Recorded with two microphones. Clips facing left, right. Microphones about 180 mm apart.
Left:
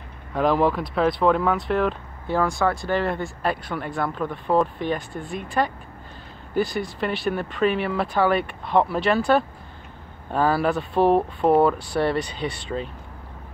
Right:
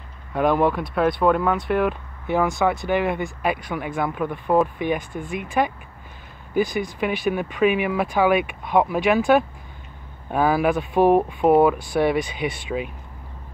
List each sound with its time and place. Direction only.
0.3 s speech: centre (ahead or behind)
2.2 s speech: 20° right (ahead or behind)